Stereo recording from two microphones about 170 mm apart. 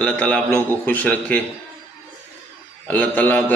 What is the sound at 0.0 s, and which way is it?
A man's voice, 5° left (ahead or behind).